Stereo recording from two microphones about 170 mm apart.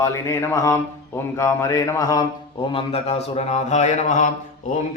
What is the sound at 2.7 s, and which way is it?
Speech, 35° left (ahead or behind).